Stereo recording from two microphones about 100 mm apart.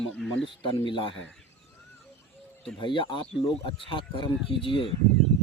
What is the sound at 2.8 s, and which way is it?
Speech, 55° left (ahead or behind).